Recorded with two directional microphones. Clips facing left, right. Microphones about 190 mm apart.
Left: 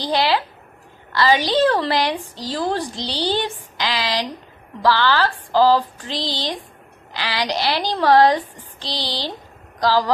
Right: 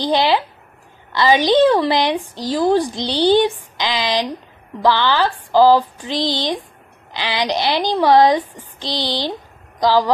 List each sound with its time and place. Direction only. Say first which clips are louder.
0.0 s a woman's voice: right 3 dB; 20° right (ahead or behind)